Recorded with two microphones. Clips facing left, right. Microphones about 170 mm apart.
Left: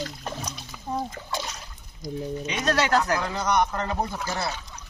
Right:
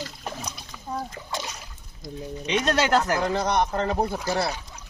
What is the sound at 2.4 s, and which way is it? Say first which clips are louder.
Speech: right 3 dB; 25° right (ahead or behind).